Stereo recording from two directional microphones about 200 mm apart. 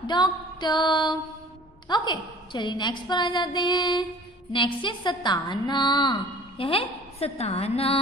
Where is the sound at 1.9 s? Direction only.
20° left (ahead or behind).